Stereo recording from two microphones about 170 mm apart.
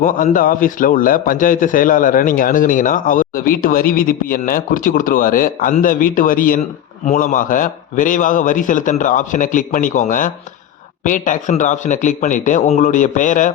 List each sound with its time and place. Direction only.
0.0 s a man's voice: 50° left (ahead or behind)